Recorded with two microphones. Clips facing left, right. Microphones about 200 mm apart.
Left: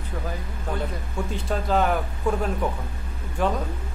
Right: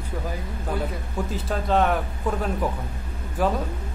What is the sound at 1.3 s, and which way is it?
A man's voice, centre (ahead or behind).